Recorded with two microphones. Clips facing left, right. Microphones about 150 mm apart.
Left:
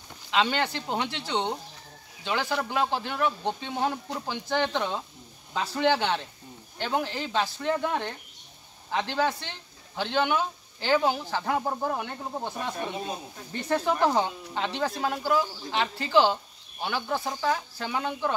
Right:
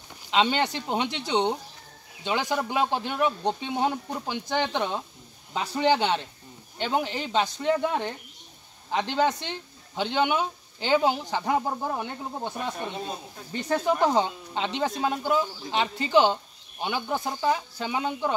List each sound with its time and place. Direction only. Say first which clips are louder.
0.3 s speech: right 2 dB; 20° right (ahead or behind)
13.7 s speech: right 1 dB; 15° right (ahead or behind)